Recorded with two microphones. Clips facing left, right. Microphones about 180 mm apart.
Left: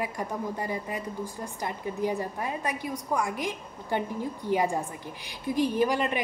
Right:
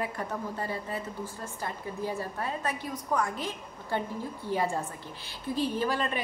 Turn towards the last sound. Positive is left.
turn(degrees=15)  # may be behind; listen again after turning